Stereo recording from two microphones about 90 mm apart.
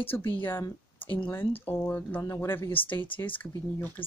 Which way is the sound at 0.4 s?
25° left (ahead or behind).